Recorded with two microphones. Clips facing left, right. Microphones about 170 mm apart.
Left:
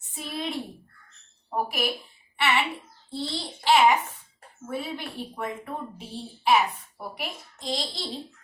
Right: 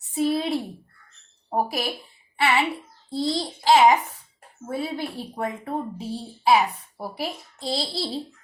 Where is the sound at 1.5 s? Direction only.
40° right (ahead or behind).